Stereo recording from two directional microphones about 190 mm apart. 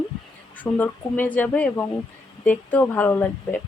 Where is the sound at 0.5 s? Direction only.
10° left (ahead or behind).